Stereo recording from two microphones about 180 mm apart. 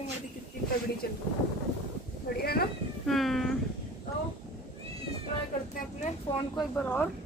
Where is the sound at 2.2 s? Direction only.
60° left (ahead or behind).